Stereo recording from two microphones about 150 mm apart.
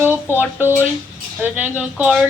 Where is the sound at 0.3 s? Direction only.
15° right (ahead or behind).